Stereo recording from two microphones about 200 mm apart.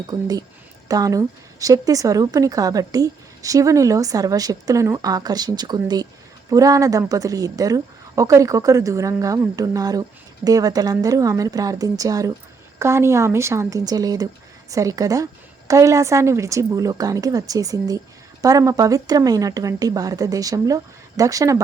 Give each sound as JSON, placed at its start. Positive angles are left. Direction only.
{"t": 0.1, "sound": "speech", "side_deg": -20}